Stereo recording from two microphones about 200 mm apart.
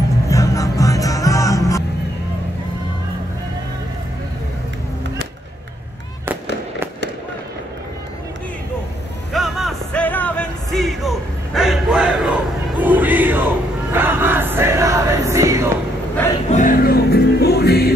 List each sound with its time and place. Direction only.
0.3 s music: 15° left (ahead or behind)
9.3 s music: centre (ahead or behind)
12.8 s crowd: 10° right (ahead or behind)
16.4 s music: 40° left (ahead or behind)